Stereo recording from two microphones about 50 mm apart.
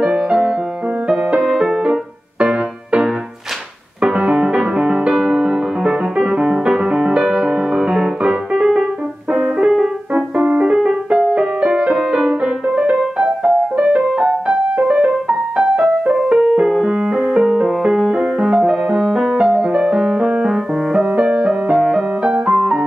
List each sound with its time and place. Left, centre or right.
0.0 s music: centre
1.4 s music: centre
2.4 s music: right; by 19.3 s centre
19.4 s music: centre
21.7 s music: centre
22.2 s music: centre